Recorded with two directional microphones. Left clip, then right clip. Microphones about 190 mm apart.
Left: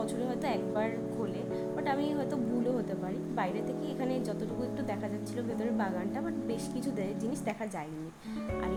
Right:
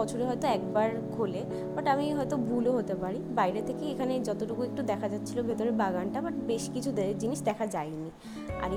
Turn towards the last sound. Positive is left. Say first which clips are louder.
# right 5 dB
turn(degrees=-20)  # may be behind; listen again after turning